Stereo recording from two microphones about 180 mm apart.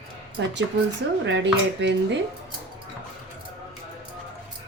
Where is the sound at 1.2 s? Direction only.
85° right.